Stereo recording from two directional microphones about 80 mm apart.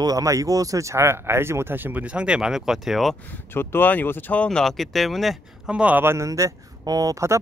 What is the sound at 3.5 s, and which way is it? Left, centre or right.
Speech, left.